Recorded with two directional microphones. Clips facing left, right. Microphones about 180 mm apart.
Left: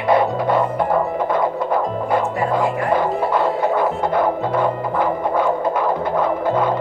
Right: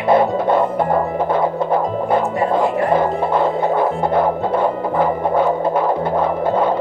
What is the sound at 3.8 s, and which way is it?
Music, 30° right (ahead or behind).